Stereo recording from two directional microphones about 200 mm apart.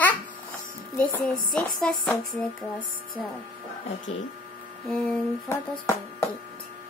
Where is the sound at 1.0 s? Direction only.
5° left (ahead or behind).